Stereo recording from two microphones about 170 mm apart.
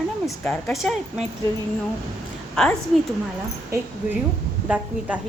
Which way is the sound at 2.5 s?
5° left (ahead or behind).